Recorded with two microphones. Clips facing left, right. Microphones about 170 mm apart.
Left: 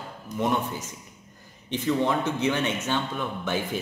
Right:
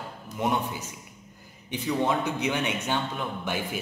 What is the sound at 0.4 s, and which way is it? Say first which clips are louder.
A man's voice: left 1 dB; 10° right (ahead or behind).